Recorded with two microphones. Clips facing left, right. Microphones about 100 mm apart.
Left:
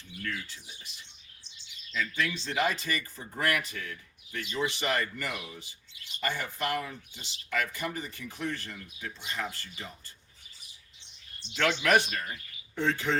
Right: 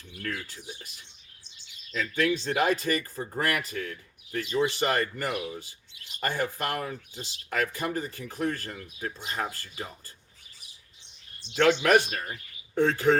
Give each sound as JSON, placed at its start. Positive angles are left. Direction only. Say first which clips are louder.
{"t": 0.2, "sound": "speech", "louder": "right 2 dB", "side_deg": -50}
{"t": 11.5, "sound": "speech", "louder": "right 4 dB", "side_deg": -40}